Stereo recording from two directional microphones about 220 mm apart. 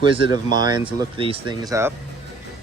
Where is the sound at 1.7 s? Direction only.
10° right (ahead or behind).